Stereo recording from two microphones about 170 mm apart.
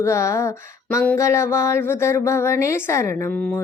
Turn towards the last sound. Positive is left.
turn(degrees=15)  # may be behind; listen again after turning